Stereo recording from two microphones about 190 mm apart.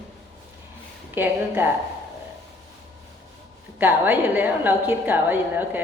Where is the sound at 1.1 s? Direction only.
10° right (ahead or behind).